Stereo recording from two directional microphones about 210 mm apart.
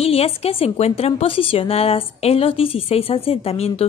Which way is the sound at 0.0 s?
30° left (ahead or behind).